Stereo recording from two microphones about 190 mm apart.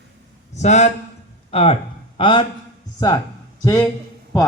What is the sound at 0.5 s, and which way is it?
A man's voice, 35° left (ahead or behind).